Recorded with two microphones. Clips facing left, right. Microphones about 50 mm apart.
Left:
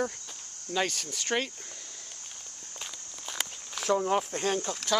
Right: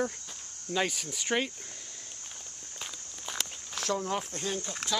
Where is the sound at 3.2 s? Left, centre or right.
Centre.